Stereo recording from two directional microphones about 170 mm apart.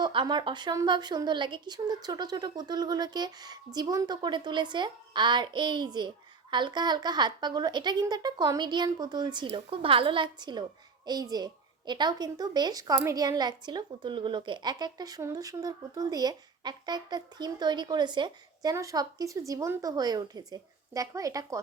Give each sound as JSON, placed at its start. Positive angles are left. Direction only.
{"t": 0.0, "sound": "a woman's voice", "side_deg": -30}